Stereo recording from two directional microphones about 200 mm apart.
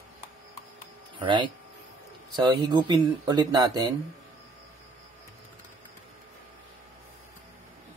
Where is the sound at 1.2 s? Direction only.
25° right (ahead or behind).